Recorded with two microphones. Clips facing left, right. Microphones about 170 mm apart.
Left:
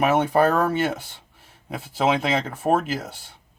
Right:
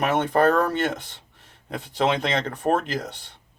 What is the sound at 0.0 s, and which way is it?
Speech, 5° left (ahead or behind).